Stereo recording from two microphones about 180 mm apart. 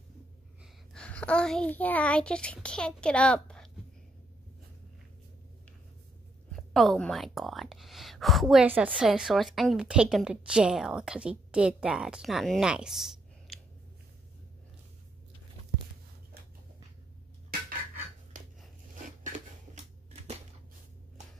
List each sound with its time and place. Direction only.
0.9 s a woman's voice: 5° left (ahead or behind)
6.5 s a woman's voice: centre (ahead or behind)
19.0 s a sound: 45° right (ahead or behind)